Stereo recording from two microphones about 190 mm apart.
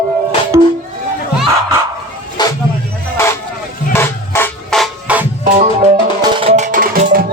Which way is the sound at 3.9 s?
10° left (ahead or behind).